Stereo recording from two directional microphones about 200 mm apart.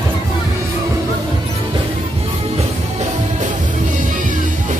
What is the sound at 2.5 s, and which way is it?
Music, 35° right (ahead or behind).